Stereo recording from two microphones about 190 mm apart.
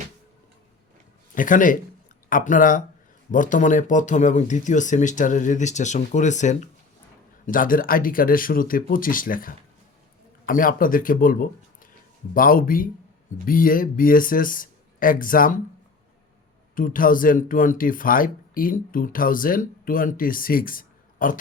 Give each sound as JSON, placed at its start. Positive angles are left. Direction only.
{"t": 1.4, "sound": "speech", "side_deg": 45}
{"t": 16.7, "sound": "speech", "side_deg": 45}